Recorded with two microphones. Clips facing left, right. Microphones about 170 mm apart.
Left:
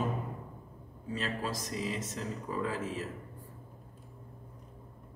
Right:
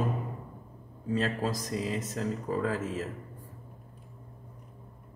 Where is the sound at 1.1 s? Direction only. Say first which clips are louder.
Right 6 dB; 45° right (ahead or behind).